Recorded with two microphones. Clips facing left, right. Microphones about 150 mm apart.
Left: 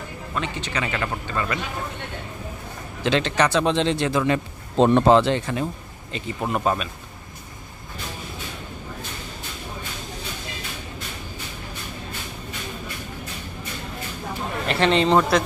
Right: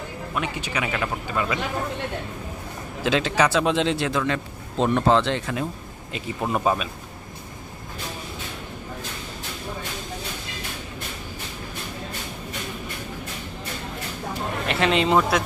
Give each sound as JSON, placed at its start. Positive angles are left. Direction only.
{"t": 0.3, "sound": "speech", "side_deg": -10}
{"t": 3.0, "sound": "a man's voice", "side_deg": -5}
{"t": 4.7, "sound": "speech", "side_deg": 30}
{"t": 5.1, "sound": "a man's voice", "side_deg": 5}
{"t": 14.7, "sound": "speech", "side_deg": -5}